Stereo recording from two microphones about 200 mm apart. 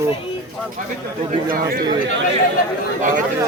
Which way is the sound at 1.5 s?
50° right (ahead or behind).